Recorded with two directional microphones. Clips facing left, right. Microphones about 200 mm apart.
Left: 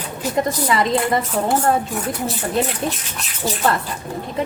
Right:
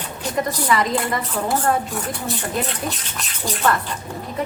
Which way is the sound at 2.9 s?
25° left (ahead or behind).